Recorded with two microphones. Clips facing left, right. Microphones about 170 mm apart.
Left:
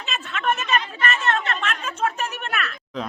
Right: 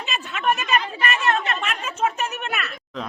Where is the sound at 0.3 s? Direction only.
10° right (ahead or behind).